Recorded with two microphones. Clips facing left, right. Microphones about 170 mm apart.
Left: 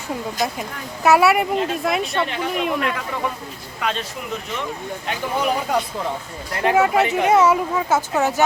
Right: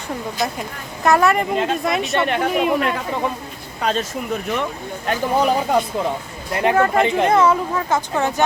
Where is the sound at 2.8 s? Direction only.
35° right (ahead or behind).